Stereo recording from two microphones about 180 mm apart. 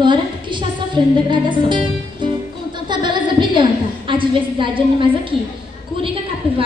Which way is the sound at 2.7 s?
25° right (ahead or behind).